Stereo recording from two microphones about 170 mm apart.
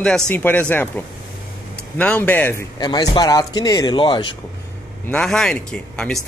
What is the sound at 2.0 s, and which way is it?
Speech, 10° left (ahead or behind).